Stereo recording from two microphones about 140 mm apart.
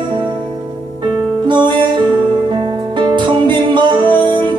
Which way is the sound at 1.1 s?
35° right (ahead or behind).